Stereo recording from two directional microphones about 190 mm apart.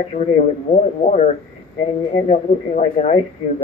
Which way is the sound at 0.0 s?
35° left (ahead or behind).